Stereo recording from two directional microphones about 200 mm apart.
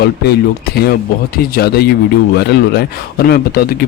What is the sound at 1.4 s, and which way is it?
Speech, 50° left (ahead or behind).